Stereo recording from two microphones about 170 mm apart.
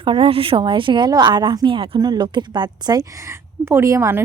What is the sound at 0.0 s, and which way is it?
A woman's voice, 30° right (ahead or behind).